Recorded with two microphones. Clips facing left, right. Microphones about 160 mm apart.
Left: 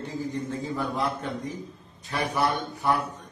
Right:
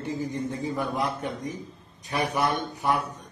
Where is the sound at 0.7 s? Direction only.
15° right (ahead or behind).